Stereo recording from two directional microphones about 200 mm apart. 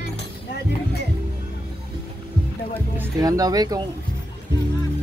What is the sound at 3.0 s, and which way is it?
Speech, 15° right (ahead or behind).